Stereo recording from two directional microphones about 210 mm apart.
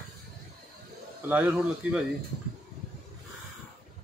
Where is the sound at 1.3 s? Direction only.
5° right (ahead or behind).